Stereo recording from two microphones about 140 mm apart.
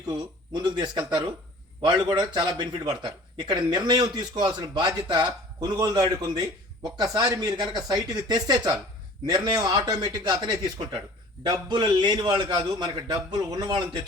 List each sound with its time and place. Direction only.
0.1 s a man's voice: 30° right (ahead or behind)